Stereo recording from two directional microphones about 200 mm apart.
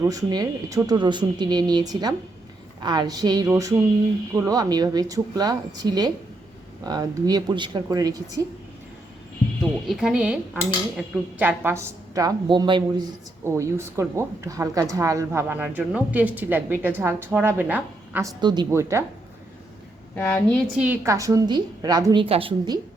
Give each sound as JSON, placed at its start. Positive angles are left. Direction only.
{"t": 0.0, "sound": "a woman's voice", "side_deg": -15}
{"t": 9.8, "sound": "speech", "side_deg": 0}
{"t": 18.3, "sound": "speech", "side_deg": -20}
{"t": 20.1, "sound": "a woman's voice", "side_deg": 10}
{"t": 20.7, "sound": "a woman's voice", "side_deg": -5}